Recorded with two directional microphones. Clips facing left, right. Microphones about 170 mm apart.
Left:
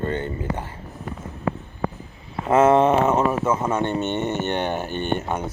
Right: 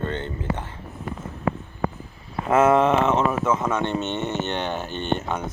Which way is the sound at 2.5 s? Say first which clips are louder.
Left 2 dB; 35° left (ahead or behind).